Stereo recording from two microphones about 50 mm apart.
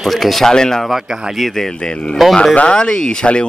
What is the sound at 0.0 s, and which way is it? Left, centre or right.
Speech, centre.